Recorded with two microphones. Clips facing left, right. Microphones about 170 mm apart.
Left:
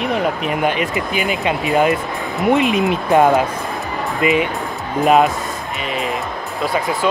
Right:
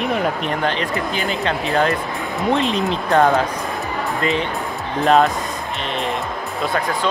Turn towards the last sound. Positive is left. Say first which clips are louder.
# left 2 dB
turn(degrees=0)  # may be behind; listen again after turning